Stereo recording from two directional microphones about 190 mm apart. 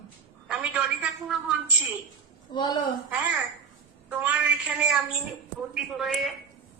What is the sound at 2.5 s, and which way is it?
Speech, 20° left (ahead or behind).